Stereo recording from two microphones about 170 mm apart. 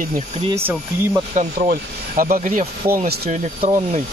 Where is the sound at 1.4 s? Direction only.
50° right (ahead or behind).